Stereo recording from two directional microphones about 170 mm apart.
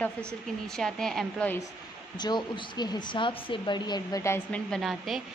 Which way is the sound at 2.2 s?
25° left (ahead or behind).